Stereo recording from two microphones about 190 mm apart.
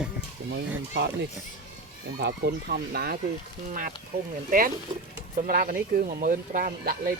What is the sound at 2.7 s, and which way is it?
Speech, 55° right (ahead or behind).